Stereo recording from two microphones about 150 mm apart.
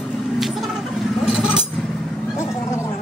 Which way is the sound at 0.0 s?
Centre (ahead or behind).